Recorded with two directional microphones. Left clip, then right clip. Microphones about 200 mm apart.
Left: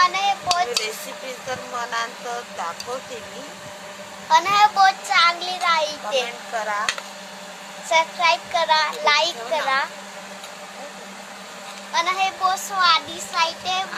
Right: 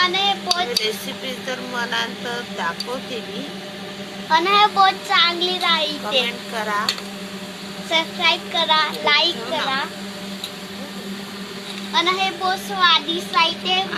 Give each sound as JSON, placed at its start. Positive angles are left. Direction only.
{"t": 0.0, "sound": "dishes", "side_deg": 10}
{"t": 1.5, "sound": "a child's voice", "side_deg": 10}
{"t": 4.3, "sound": "a child's voice", "side_deg": 15}
{"t": 7.9, "sound": "a child's voice", "side_deg": 15}
{"t": 11.9, "sound": "a child's voice", "side_deg": 5}